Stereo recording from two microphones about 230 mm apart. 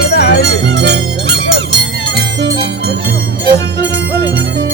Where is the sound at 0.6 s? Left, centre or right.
Right.